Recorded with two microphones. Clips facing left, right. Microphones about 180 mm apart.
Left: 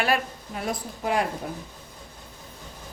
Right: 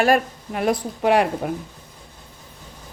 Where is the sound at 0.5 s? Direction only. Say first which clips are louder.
Right 9 dB; 70° right (ahead or behind).